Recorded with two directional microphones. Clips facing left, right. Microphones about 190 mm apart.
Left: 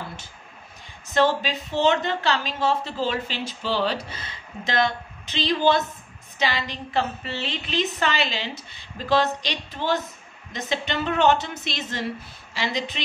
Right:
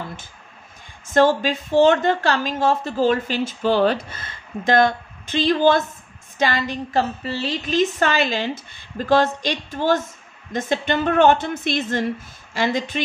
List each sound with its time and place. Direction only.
1.1 s a woman's voice: 50° right (ahead or behind)